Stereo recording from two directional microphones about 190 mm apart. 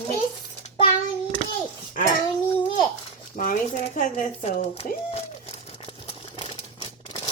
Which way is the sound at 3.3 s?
45° left (ahead or behind).